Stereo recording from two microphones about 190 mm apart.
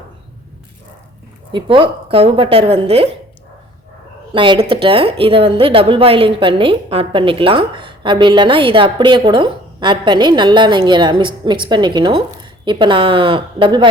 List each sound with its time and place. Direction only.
1.5 s a woman's voice: 25° right (ahead or behind)
4.4 s a woman's voice: 25° right (ahead or behind)